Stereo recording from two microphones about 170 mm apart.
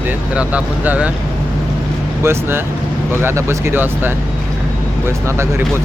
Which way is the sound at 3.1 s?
15° right (ahead or behind).